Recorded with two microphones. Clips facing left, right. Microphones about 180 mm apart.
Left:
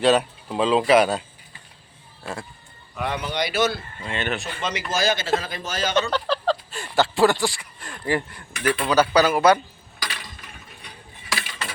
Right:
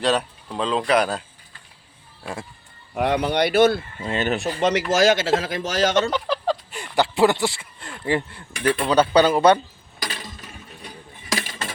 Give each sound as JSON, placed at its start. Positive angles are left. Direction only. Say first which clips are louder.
{"t": 0.0, "sound": "speech", "louder": "left 3 dB", "side_deg": 5}
{"t": 2.9, "sound": "speech", "louder": "right 6 dB", "side_deg": -65}
{"t": 4.0, "sound": "speech", "louder": "right 4 dB", "side_deg": -40}
{"t": 4.9, "sound": "speech", "louder": "right 3 dB", "side_deg": -85}
{"t": 6.1, "sound": "speech", "louder": "even", "side_deg": -15}
{"t": 10.0, "sound": "a sound", "louder": "right 3 dB", "side_deg": -30}
{"t": 10.8, "sound": "a sound", "louder": "right 4 dB", "side_deg": -40}